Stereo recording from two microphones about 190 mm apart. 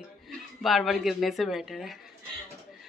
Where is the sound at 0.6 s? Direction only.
Centre (ahead or behind).